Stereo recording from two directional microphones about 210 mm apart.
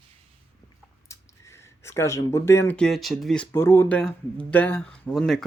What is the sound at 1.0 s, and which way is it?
Speech, 15° left (ahead or behind).